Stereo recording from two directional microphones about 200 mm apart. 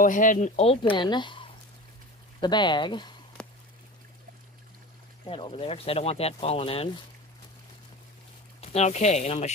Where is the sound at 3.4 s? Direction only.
5° left (ahead or behind).